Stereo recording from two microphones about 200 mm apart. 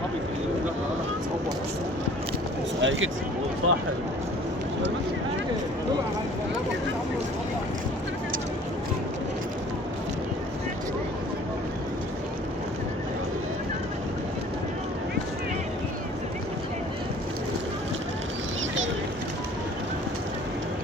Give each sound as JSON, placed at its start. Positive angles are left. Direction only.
{"t": 2.8, "sound": "speech", "side_deg": -70}
{"t": 3.6, "sound": "speech", "side_deg": -90}